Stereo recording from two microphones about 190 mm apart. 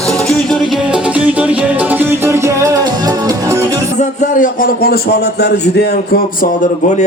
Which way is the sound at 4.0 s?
40° left (ahead or behind).